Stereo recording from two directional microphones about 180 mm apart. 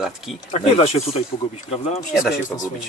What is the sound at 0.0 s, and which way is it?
Speech, centre (ahead or behind).